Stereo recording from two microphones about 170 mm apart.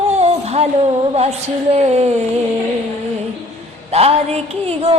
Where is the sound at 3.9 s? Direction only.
35° right (ahead or behind).